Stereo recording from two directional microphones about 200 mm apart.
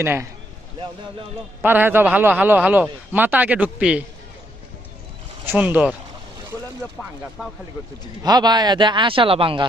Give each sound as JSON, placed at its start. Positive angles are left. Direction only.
{"t": 0.0, "sound": "a man's voice", "side_deg": -10}
{"t": 1.6, "sound": "a man's voice", "side_deg": -10}
{"t": 5.4, "sound": "a man's voice", "side_deg": -10}
{"t": 7.0, "sound": "speech", "side_deg": 5}
{"t": 8.2, "sound": "speech", "side_deg": -20}